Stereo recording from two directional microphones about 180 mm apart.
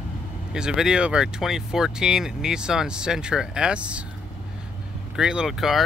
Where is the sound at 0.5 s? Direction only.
5° right (ahead or behind).